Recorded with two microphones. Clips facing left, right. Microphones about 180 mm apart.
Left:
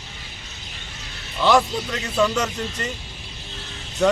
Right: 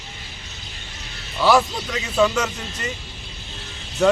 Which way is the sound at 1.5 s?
5° right (ahead or behind).